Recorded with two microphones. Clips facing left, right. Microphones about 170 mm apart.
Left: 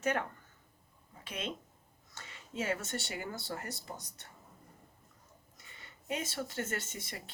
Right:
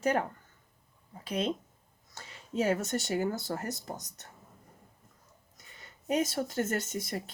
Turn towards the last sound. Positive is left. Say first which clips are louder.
# right 10 dB
turn(degrees=-40)  # may be behind; listen again after turning